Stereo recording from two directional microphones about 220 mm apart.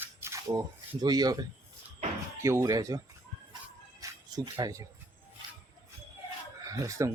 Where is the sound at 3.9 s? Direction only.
15° right (ahead or behind).